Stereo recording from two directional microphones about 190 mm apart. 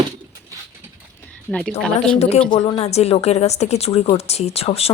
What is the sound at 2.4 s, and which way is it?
A woman's voice, 25° left (ahead or behind).